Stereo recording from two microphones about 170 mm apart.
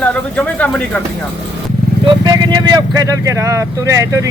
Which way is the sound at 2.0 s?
20° right (ahead or behind).